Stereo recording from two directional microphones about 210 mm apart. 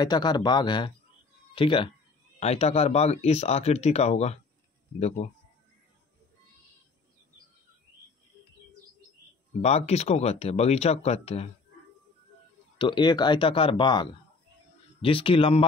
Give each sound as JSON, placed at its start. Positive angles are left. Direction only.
{"t": 0.0, "sound": "speech", "side_deg": 20}
{"t": 9.6, "sound": "speech", "side_deg": 30}
{"t": 12.7, "sound": "speech", "side_deg": 25}